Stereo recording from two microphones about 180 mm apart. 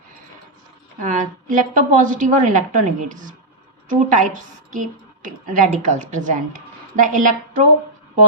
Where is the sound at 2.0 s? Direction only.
45° right (ahead or behind).